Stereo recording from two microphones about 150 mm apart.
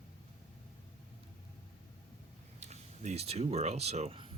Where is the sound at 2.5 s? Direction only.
50° right (ahead or behind).